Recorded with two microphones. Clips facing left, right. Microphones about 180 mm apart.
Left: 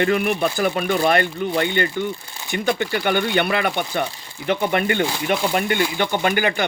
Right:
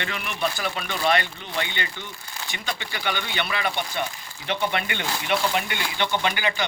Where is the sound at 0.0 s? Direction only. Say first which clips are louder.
Left 10 dB; 50° left (ahead or behind).